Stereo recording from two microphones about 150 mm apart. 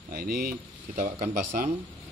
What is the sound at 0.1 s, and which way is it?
Speech, 80° right.